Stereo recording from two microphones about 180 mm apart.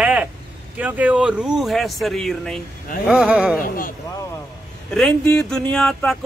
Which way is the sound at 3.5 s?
50° left (ahead or behind).